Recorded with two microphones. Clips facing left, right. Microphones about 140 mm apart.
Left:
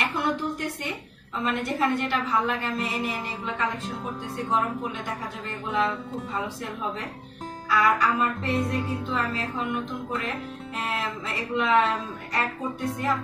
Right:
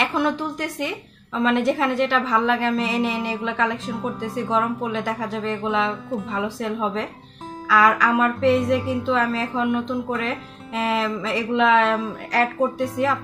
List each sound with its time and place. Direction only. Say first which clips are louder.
0.0 s speech: right 5 dB; 90° right